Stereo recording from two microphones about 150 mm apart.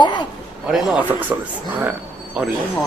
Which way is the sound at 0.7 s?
5° right (ahead or behind).